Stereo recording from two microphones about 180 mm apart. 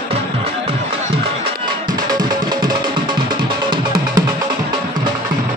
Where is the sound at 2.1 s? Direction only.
20° right (ahead or behind).